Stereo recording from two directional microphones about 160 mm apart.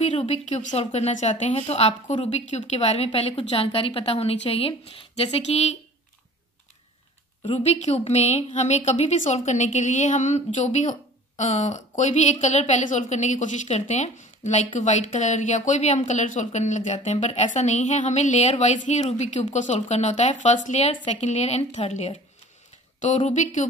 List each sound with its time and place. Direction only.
0.1 s a woman's voice: 40° left (ahead or behind)
2.1 s a woman's voice: 30° left (ahead or behind)
2.5 s a woman's voice: 45° left (ahead or behind)
7.4 s a woman's voice: 40° left (ahead or behind)